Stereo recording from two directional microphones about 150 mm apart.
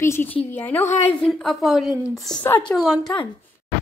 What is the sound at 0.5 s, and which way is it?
A woman's voice, 10° left (ahead or behind).